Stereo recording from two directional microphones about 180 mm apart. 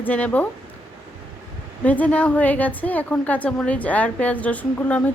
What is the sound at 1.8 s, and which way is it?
A woman's voice, 10° left (ahead or behind).